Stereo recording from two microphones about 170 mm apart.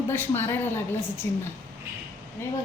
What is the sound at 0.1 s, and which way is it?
A woman's voice, 10° left (ahead or behind).